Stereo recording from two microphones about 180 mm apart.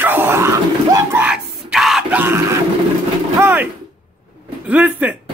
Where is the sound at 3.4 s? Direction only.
10° right (ahead or behind).